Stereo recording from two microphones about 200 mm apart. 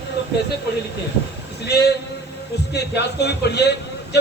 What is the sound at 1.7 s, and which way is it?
A man's voice, 55° left (ahead or behind).